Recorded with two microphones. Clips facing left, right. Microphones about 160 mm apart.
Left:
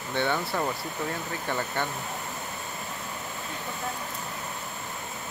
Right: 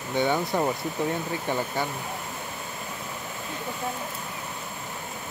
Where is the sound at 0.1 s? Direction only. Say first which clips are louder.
Right 3 dB; 15° right (ahead or behind).